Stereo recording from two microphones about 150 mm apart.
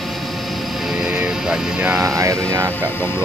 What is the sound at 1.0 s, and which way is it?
Speech, 5° right (ahead or behind).